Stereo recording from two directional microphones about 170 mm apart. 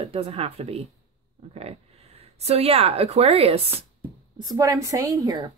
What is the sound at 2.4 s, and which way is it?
Speech, 40° right (ahead or behind).